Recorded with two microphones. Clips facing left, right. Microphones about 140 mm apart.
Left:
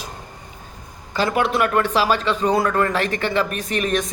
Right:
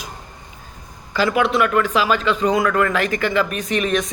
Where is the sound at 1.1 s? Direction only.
35° left (ahead or behind).